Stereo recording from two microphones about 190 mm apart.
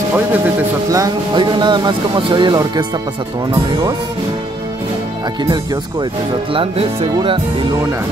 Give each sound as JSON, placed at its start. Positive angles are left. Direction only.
{"t": 0.9, "sound": "speech", "side_deg": -20}
{"t": 5.4, "sound": "speech", "side_deg": -20}